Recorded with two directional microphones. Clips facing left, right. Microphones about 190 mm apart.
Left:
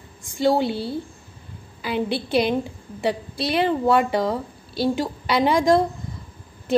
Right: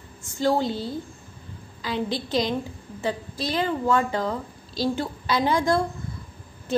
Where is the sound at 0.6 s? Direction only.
65° left (ahead or behind).